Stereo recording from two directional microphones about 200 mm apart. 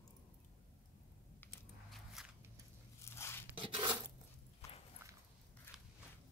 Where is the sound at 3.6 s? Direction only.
25° right (ahead or behind).